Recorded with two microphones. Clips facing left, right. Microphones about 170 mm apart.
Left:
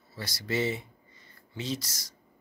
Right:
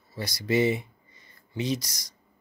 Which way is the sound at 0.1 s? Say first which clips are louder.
Right 6 dB; 15° right (ahead or behind).